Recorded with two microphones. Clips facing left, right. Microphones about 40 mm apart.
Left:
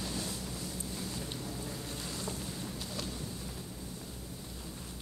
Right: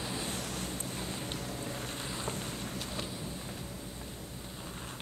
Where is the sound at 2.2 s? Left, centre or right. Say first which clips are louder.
Right 2 dB; right.